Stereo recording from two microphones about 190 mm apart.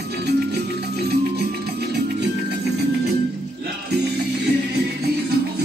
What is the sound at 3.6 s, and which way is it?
Music, 60° right (ahead or behind).